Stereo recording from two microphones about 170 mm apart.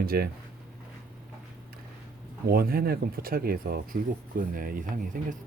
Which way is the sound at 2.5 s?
60° right (ahead or behind).